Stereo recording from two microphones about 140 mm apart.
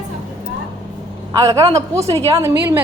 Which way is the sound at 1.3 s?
25° right (ahead or behind).